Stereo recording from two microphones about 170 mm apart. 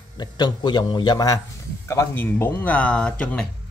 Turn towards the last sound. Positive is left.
turn(degrees=5)  # may be behind; listen again after turning